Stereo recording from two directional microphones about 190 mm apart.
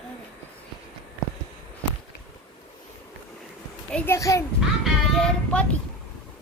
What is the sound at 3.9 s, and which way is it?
Speech, 10° left (ahead or behind).